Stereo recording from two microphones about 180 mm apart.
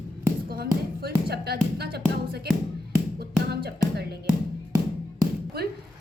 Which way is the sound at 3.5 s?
60° right (ahead or behind).